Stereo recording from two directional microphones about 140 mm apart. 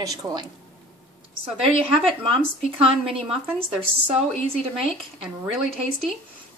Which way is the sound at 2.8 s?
40° right (ahead or behind).